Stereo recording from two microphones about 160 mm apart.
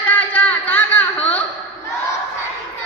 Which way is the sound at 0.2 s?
10° left (ahead or behind).